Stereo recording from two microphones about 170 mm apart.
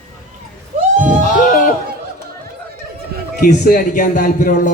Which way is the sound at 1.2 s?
50° left (ahead or behind).